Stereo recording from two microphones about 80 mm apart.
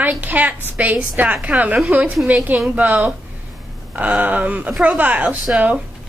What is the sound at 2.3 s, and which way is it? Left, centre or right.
A woman's voice, right.